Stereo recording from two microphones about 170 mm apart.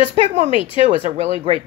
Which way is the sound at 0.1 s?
40° right (ahead or behind).